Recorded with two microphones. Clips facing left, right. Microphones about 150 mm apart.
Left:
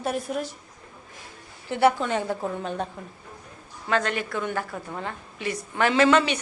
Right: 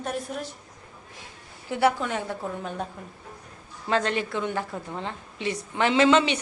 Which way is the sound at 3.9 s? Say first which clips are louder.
Even; 30° right (ahead or behind).